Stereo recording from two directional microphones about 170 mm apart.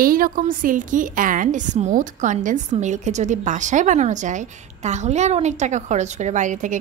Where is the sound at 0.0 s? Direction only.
55° right (ahead or behind).